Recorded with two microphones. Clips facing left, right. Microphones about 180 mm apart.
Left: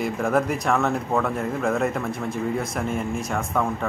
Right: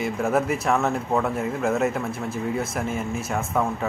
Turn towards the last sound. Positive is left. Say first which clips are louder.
# even
turn(degrees=-5)  # may be behind; listen again after turning